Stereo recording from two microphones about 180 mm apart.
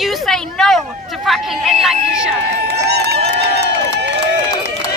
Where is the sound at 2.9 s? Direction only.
65° right (ahead or behind).